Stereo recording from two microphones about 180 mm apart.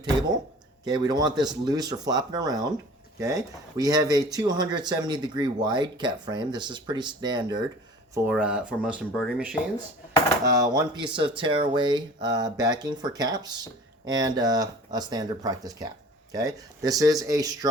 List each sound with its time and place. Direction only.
0.0 s speech: 20° right (ahead or behind)
8.3 s speech: 5° right (ahead or behind)
10.4 s speech: 20° right (ahead or behind)